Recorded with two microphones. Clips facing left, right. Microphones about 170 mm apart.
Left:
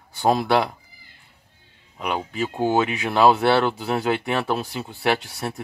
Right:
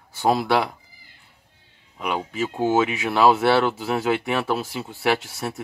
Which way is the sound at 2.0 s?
5° right (ahead or behind).